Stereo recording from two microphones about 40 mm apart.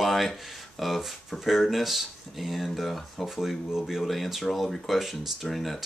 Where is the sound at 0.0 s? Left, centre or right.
Centre.